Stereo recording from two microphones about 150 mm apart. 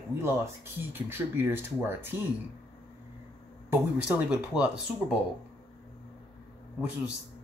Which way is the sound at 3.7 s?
10° right (ahead or behind).